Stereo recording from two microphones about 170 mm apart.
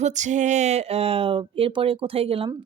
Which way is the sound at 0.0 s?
45° right (ahead or behind).